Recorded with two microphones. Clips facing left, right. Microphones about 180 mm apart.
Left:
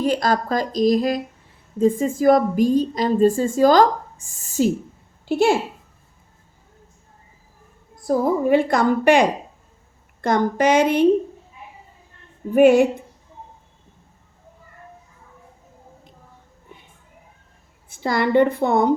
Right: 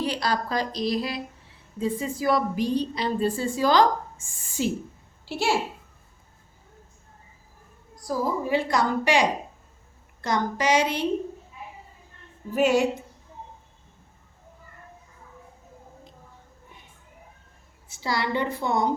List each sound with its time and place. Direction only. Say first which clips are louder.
0.0 s a woman's voice: left 7 dB; 45° left (ahead or behind)
5.2 s a child's voice: left 9 dB; 50° left (ahead or behind)
8.0 s a woman's voice: left 8 dB; 55° left (ahead or behind)
12.5 s a woman's voice: left 8 dB; 55° left (ahead or behind)
17.8 s a woman's voice: left 7 dB; 55° left (ahead or behind)